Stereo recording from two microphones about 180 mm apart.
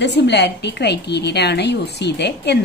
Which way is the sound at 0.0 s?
70° left (ahead or behind).